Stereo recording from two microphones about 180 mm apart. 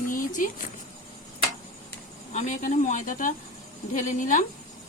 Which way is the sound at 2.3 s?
40° left (ahead or behind).